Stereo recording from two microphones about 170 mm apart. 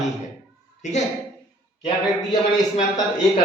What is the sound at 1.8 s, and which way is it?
A man's voice, 25° left (ahead or behind).